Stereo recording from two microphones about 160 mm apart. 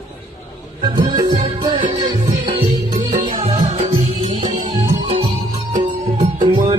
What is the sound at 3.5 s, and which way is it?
Music, 45° right (ahead or behind).